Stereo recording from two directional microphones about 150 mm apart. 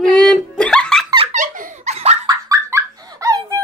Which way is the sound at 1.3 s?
60° right (ahead or behind).